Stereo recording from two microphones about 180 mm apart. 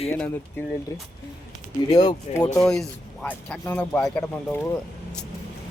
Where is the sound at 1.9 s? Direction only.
20° left (ahead or behind).